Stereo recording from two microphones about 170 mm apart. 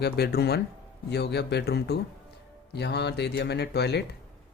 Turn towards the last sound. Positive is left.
turn(degrees=80)